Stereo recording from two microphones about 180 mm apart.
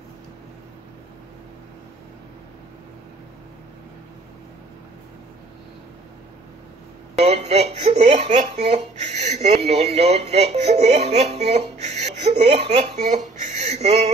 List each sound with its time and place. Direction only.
7.2 s speech: 35° right (ahead or behind)